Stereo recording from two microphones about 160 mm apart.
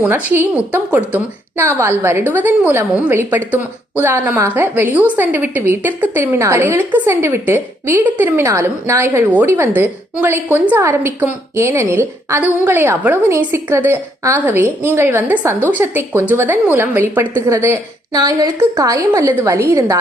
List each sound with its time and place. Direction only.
0.0 s a woman's voice: 10° right (ahead or behind)